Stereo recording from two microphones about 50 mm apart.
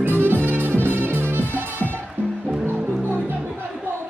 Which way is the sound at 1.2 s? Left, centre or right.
Left.